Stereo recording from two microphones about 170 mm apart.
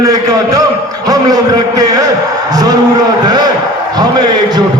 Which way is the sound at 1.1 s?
20° right (ahead or behind).